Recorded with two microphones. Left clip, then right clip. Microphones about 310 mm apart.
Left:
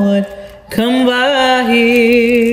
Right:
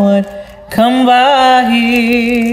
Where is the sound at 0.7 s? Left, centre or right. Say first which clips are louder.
Right 5 dB; centre.